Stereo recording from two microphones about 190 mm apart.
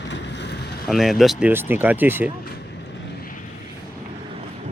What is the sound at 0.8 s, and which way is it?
Speech, centre (ahead or behind).